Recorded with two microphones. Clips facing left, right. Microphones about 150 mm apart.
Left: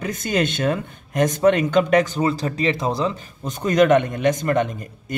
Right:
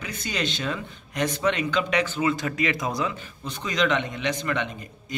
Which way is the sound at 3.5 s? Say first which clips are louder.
Left 9 dB; 50° left (ahead or behind).